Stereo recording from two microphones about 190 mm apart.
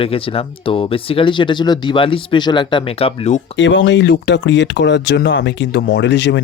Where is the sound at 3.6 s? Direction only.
75° left (ahead or behind).